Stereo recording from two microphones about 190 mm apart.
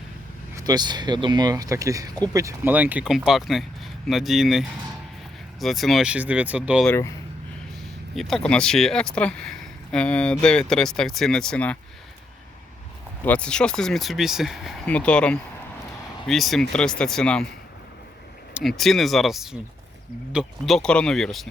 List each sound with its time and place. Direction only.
0.5 s speech: 20° right (ahead or behind)
6.8 s speech: 15° left (ahead or behind)
8.1 s speech: centre (ahead or behind)
13.2 s speech: 5° left (ahead or behind)
18.8 s speech: centre (ahead or behind)